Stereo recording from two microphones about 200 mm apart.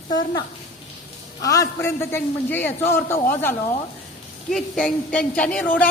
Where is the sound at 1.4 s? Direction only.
15° left (ahead or behind).